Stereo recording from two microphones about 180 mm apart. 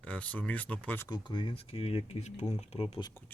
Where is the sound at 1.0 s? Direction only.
25° left (ahead or behind).